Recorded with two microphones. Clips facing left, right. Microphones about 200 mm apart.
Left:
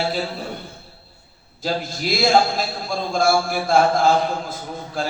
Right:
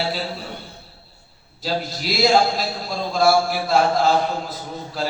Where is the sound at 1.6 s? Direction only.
50° left (ahead or behind).